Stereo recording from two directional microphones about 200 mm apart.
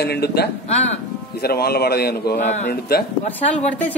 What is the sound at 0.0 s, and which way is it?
Speech, 55° left (ahead or behind).